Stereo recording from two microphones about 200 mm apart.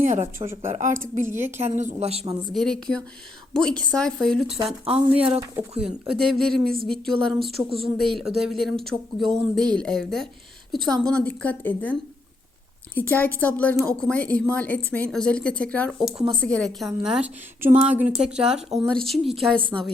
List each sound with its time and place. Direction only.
0.0 s a woman's voice: 40° right (ahead or behind)
1.2 s a woman's voice: 10° right (ahead or behind)
1.8 s a woman's voice: 30° right (ahead or behind)
2.5 s speech: centre (ahead or behind)
4.4 s speech: 30° right (ahead or behind)
5.1 s a woman's voice: 5° right (ahead or behind)
7.6 s speech: 20° right (ahead or behind)
7.9 s a woman's voice: centre (ahead or behind)